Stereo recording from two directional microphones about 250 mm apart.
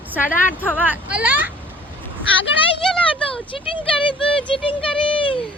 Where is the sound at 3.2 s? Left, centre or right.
Left.